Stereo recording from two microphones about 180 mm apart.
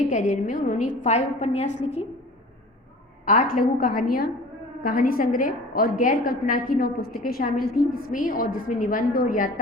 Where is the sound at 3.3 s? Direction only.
50° left (ahead or behind).